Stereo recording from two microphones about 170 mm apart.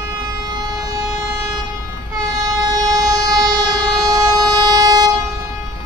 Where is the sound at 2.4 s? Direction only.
20° right (ahead or behind).